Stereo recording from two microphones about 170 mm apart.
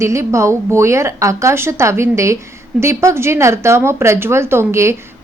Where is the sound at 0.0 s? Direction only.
15° right (ahead or behind).